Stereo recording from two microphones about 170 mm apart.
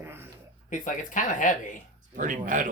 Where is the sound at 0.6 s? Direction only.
50° left (ahead or behind).